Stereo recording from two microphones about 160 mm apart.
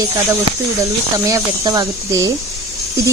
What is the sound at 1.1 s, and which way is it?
Speech, 20° right (ahead or behind).